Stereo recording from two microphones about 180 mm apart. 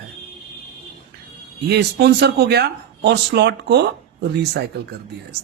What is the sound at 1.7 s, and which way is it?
Speech, 65° right (ahead or behind).